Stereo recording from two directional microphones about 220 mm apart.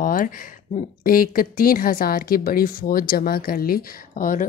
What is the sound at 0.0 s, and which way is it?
A woman's voice, 40° left (ahead or behind).